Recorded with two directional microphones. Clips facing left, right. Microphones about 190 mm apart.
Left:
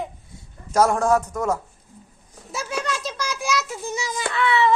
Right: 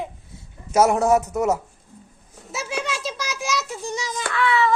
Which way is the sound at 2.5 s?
Centre (ahead or behind).